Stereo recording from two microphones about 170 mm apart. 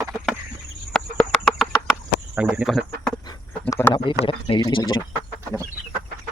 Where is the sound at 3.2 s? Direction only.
15° left (ahead or behind).